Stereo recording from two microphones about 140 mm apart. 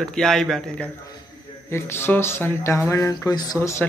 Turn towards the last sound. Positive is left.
turn(degrees=20)  # may be behind; listen again after turning